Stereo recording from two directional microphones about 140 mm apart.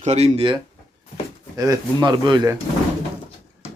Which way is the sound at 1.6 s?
30° right (ahead or behind).